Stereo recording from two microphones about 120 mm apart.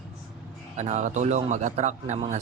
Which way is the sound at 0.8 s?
85° right.